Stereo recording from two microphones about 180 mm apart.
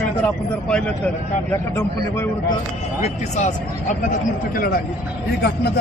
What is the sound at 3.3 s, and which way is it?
Speech, 40° left (ahead or behind).